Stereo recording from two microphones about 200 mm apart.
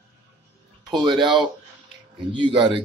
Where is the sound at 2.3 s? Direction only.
25° right (ahead or behind).